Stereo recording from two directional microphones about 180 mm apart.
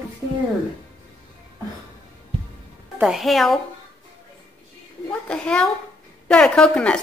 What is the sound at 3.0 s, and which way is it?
Speech, centre (ahead or behind).